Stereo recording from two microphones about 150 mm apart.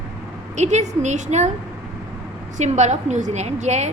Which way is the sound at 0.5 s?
50° right (ahead or behind).